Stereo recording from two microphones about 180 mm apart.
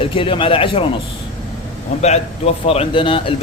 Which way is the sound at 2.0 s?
35° left (ahead or behind).